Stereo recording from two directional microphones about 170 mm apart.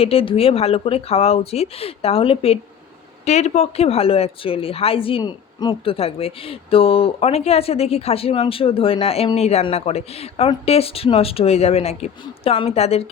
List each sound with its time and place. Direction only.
0.0 s speech: 35° left (ahead or behind)